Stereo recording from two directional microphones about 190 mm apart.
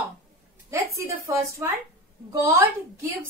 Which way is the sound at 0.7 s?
15° right (ahead or behind).